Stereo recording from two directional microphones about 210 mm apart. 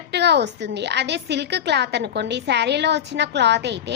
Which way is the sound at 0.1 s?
50° right (ahead or behind).